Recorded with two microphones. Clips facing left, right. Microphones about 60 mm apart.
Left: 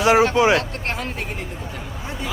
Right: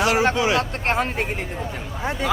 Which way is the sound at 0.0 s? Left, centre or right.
Left.